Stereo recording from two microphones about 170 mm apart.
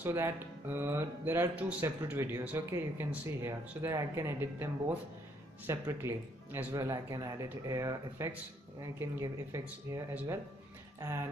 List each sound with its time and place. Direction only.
0.0 s speech: 15° right (ahead or behind)